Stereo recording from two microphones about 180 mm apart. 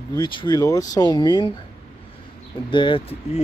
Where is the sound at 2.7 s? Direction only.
25° left (ahead or behind).